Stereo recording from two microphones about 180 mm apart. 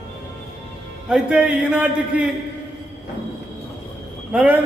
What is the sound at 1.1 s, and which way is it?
Speech, 5° right (ahead or behind).